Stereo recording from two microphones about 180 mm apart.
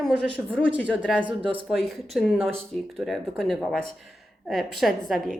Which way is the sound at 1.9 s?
Centre (ahead or behind).